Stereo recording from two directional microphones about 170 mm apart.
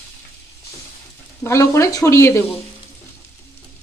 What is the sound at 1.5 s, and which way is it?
Speech, 15° left (ahead or behind).